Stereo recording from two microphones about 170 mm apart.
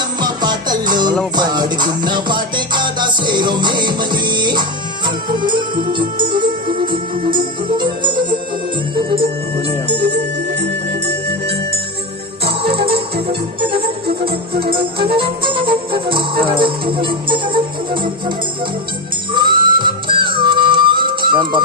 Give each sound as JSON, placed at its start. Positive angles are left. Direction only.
{"t": 0.2, "sound": "music", "side_deg": -25}
{"t": 12.5, "sound": "music", "side_deg": -35}